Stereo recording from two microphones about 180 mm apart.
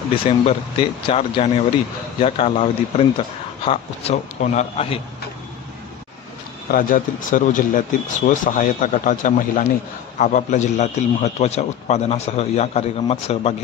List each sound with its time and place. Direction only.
0.1 s a man's voice: 30° left (ahead or behind)
6.7 s a man's voice: 50° left (ahead or behind)